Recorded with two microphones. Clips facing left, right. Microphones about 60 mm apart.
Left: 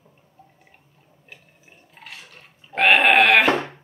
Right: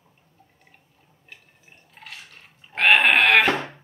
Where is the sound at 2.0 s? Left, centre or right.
Centre.